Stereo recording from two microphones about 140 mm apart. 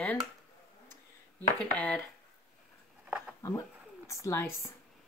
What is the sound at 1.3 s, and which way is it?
Speech, 10° left (ahead or behind).